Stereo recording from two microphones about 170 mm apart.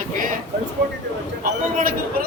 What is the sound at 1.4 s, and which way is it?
Speech, 55° right (ahead or behind).